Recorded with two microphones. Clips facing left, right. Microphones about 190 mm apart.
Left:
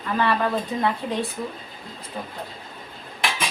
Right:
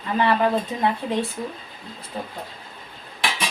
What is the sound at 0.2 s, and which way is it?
Speech, 20° right (ahead or behind).